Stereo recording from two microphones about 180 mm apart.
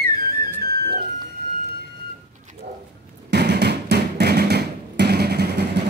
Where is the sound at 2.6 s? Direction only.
40° right (ahead or behind).